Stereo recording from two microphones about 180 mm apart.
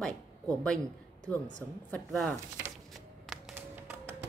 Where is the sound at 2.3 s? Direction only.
15° right (ahead or behind).